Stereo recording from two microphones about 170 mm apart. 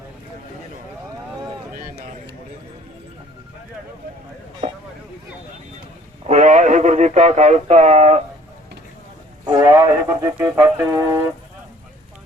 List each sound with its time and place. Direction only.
6.2 s speech: 45° right (ahead or behind)
9.5 s speech: 15° right (ahead or behind)